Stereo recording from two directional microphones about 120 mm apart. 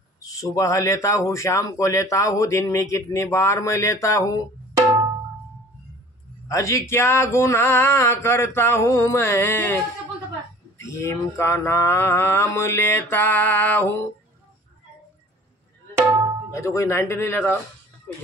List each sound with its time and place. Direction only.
0.2 s a man's voice: 30° left (ahead or behind)
6.5 s a man's voice: 25° left (ahead or behind)
10.9 s a man's voice: 25° left (ahead or behind)
16.5 s a man's voice: 25° left (ahead or behind)